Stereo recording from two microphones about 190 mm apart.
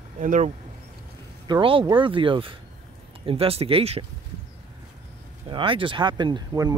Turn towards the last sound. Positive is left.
turn(degrees=-20)  # may be behind; listen again after turning